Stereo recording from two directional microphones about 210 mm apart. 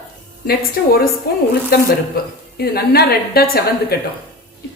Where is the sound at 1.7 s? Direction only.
45° left (ahead or behind).